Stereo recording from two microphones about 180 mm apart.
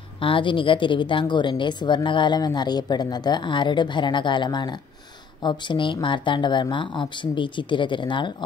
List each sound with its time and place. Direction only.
0.2 s a woman's voice: 30° left (ahead or behind)